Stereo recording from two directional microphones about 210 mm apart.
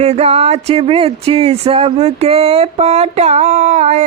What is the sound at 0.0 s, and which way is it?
Speech, 30° right (ahead or behind).